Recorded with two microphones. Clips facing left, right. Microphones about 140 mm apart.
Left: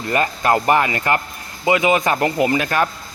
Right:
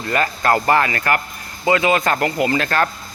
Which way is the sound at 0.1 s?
20° left (ahead or behind).